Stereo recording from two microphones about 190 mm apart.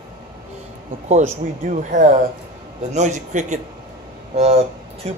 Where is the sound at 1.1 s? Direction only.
40° right (ahead or behind).